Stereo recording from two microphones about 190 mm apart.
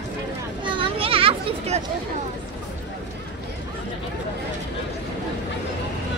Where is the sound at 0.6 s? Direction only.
25° right (ahead or behind).